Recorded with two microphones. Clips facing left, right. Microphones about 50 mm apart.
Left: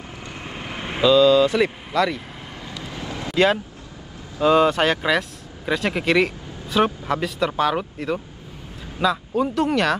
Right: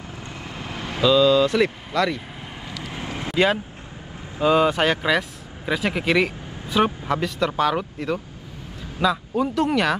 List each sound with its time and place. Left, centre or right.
0.4 s vehicle: left
1.0 s speech: centre
2.8 s vehicle: right
4.5 s speech: centre